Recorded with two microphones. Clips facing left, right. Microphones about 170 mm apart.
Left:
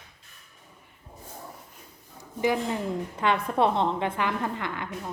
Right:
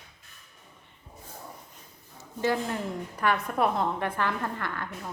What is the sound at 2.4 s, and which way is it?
A woman's voice, 15° left (ahead or behind).